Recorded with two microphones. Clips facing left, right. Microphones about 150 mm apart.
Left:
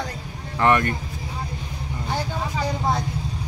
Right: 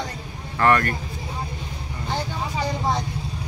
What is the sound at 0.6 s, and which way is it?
Speech, 20° left (ahead or behind).